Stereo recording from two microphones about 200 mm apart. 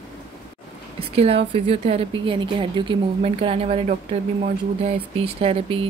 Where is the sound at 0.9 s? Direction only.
30° right (ahead or behind).